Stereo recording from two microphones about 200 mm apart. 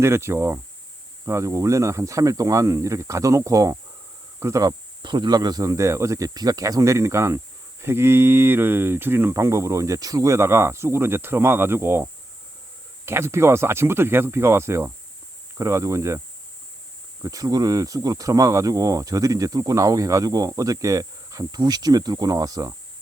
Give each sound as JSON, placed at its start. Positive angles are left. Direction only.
{"t": 0.0, "sound": "speech", "side_deg": -15}
{"t": 13.1, "sound": "speech", "side_deg": -10}
{"t": 17.2, "sound": "speech", "side_deg": -20}